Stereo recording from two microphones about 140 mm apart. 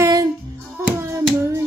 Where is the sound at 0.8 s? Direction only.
20° right (ahead or behind).